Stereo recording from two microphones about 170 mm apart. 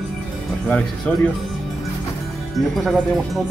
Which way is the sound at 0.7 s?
10° left (ahead or behind).